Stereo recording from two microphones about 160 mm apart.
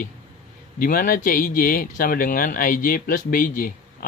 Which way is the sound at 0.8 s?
60° left (ahead or behind).